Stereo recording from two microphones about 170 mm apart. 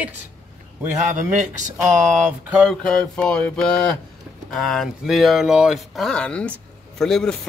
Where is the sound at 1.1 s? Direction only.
45° right (ahead or behind).